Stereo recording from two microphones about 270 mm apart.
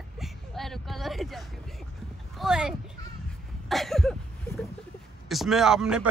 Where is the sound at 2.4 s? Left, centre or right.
Centre.